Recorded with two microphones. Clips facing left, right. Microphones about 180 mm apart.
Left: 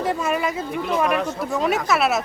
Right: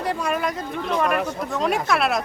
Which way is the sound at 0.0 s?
Centre (ahead or behind).